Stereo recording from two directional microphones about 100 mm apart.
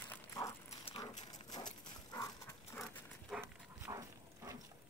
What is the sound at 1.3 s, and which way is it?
Dog, 40° left (ahead or behind).